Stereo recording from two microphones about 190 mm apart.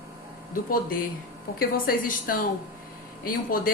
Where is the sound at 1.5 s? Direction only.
50° left (ahead or behind).